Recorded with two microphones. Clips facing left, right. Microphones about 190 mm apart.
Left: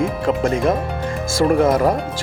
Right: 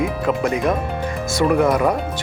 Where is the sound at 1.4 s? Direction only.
35° left (ahead or behind).